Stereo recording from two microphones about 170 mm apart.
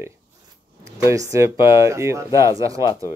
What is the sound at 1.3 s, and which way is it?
Speech, 15° right (ahead or behind).